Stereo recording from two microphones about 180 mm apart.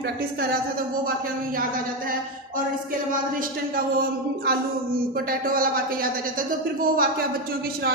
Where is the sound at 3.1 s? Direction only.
50° right (ahead or behind).